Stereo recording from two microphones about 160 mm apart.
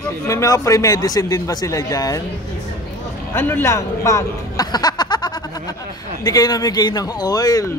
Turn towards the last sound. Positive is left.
turn(degrees=20)  # may be behind; listen again after turning